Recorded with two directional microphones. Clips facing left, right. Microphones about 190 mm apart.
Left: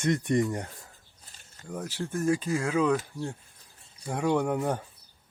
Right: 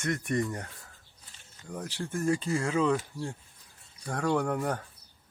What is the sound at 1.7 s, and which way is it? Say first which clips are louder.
Speech: left 2 dB; 10° left (ahead or behind).